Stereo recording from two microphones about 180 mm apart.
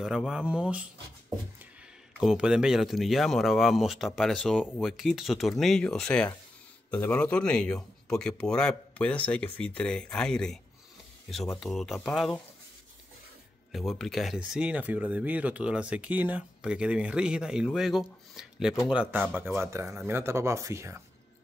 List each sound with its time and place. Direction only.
0.0 s speech: 5° right (ahead or behind)
2.1 s speech: 5° right (ahead or behind)
11.6 s speech: centre (ahead or behind)
13.7 s speech: centre (ahead or behind); by 21.0 s 15° right (ahead or behind)